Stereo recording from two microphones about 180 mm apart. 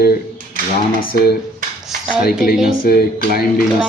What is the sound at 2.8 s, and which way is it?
Speech, 55° left (ahead or behind).